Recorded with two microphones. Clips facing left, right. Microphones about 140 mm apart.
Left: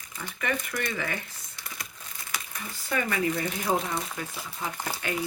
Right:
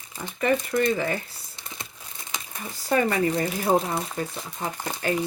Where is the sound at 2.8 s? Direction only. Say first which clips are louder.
Right 6 dB; 35° right (ahead or behind).